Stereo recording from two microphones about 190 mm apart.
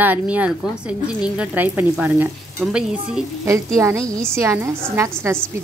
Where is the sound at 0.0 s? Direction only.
10° right (ahead or behind).